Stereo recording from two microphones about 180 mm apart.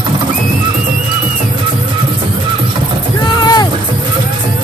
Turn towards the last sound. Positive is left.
turn(degrees=20)  # may be behind; listen again after turning